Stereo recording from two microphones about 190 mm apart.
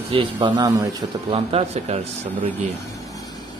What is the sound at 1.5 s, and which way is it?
Speech, 35° right (ahead or behind).